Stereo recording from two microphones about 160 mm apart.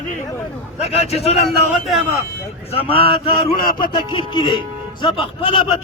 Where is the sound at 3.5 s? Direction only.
65° left (ahead or behind).